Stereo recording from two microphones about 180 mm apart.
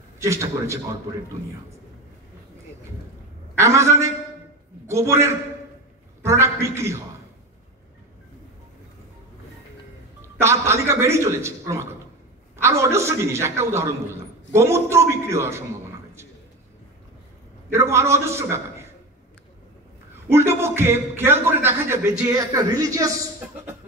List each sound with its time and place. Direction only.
0.2 s a man's voice: 15° right (ahead or behind)
3.5 s a man's voice: 15° right (ahead or behind)
10.4 s a man's voice: 15° right (ahead or behind)
17.6 s a man's voice: 15° right (ahead or behind)
20.2 s a man's voice: 15° right (ahead or behind)